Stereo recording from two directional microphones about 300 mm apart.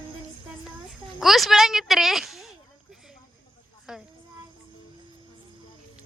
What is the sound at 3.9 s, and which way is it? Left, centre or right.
Speech, centre.